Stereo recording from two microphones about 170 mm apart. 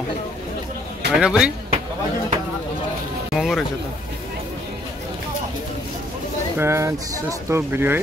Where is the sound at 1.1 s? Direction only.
5° right (ahead or behind).